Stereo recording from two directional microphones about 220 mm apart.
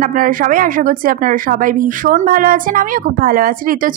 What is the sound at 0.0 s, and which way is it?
A woman's voice, 40° right (ahead or behind).